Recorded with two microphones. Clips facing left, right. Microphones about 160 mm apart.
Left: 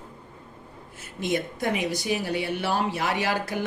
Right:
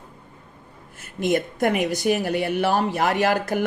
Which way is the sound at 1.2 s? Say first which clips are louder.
Right 6 dB; 55° right (ahead or behind).